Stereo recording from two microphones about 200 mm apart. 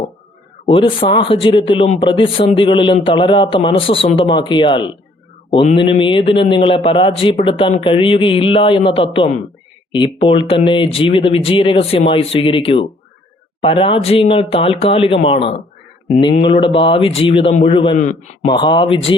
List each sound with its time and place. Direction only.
0.6 s a man's voice: 25° left (ahead or behind)
18.0 s speech: 35° left (ahead or behind)
18.4 s a man's voice: 25° left (ahead or behind)